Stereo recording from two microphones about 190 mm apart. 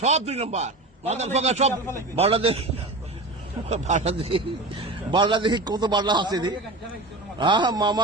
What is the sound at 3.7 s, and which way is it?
A man's voice, 40° right (ahead or behind).